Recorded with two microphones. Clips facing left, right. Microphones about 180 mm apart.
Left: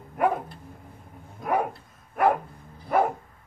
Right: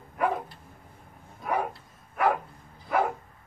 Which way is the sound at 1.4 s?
50° left (ahead or behind).